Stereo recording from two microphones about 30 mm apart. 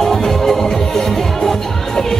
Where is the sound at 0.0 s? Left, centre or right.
Centre.